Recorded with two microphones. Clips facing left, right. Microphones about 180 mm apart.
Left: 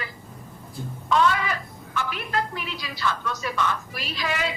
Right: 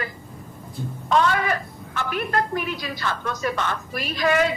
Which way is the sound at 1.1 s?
50° right (ahead or behind).